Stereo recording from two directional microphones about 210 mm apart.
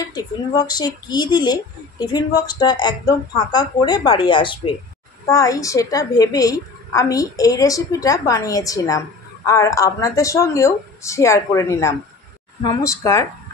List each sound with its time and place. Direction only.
0.1 s a woman's voice: 20° left (ahead or behind)